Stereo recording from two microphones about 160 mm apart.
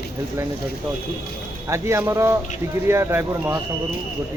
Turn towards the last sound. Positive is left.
turn(degrees=-15)  # may be behind; listen again after turning